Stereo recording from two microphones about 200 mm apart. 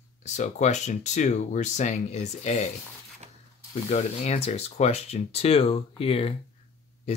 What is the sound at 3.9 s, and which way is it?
Speech, 35° left (ahead or behind).